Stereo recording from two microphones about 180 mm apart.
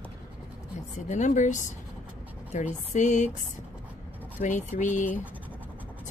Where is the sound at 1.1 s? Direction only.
40° left (ahead or behind).